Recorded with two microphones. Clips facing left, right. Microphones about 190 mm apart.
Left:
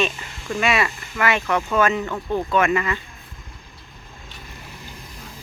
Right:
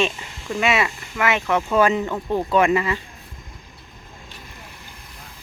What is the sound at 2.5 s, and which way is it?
Speech, 30° right (ahead or behind).